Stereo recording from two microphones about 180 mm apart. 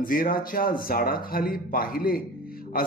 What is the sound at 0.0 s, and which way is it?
Speech, 50° left (ahead or behind).